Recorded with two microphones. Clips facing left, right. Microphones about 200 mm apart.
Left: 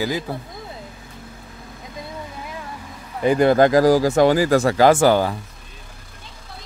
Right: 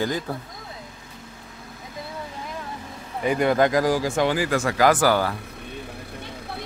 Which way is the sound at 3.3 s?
35° left (ahead or behind).